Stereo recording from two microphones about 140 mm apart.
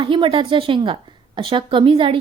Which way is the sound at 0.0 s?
40° right (ahead or behind).